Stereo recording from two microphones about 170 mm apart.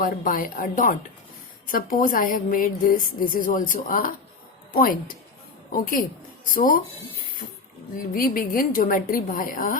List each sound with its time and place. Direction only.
0.0 s a woman's voice: 55° left (ahead or behind)
8.1 s a woman's voice: 55° left (ahead or behind)